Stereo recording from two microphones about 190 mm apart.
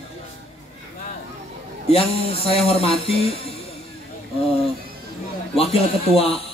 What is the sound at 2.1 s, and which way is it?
Speech, 30° left (ahead or behind).